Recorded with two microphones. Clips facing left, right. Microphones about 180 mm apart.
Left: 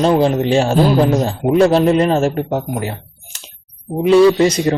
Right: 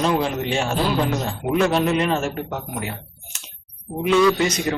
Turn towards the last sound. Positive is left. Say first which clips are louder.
# left 7 dB
turn(degrees=30)  # may be behind; listen again after turning